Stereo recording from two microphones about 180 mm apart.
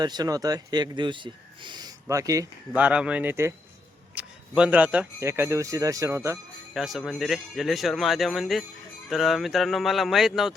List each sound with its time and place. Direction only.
0.0 s speech: 20° right (ahead or behind)
2.8 s speech: 5° right (ahead or behind)
6.7 s speech: centre (ahead or behind)